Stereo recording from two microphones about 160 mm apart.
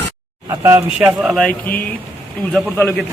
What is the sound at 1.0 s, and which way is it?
A man's voice, 5° right (ahead or behind).